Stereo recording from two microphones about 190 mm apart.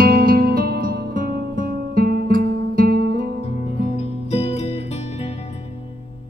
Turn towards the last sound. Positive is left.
turn(degrees=35)  # may be behind; listen again after turning